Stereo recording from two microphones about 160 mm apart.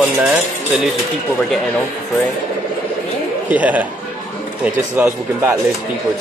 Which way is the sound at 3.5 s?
10° right (ahead or behind).